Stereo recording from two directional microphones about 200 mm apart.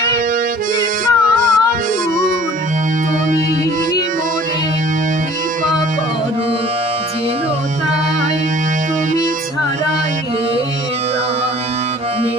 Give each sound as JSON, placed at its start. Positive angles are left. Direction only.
{"t": 1.0, "sound": "music", "side_deg": -45}